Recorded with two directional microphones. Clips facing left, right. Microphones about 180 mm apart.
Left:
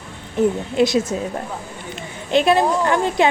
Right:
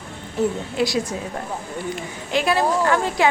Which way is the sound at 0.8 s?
20° left (ahead or behind).